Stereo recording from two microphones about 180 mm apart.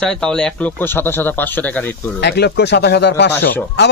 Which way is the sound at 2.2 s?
65° left (ahead or behind).